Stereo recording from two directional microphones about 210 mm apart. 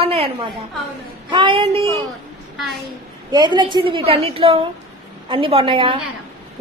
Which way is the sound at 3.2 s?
20° right (ahead or behind).